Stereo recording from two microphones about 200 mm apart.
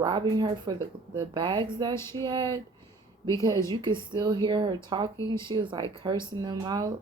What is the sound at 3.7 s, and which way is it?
Speech, 25° right (ahead or behind).